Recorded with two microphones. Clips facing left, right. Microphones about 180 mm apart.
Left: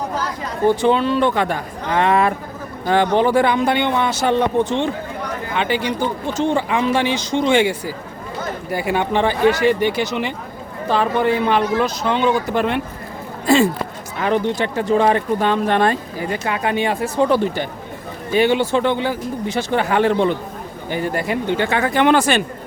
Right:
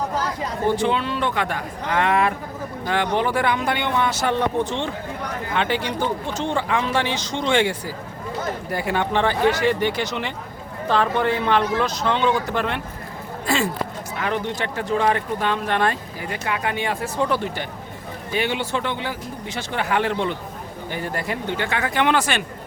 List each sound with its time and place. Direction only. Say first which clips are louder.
0.8 s a man's voice: left 6 dB; 40° left (ahead or behind)
5.5 s speech: left 3 dB; 5° left (ahead or behind)
14.2 s speech: left 7 dB; 30° left (ahead or behind); by 20.3 s 45° left (ahead or behind)
20.9 s speech: left 6 dB; 15° left (ahead or behind); by 22.4 s 40° left (ahead or behind)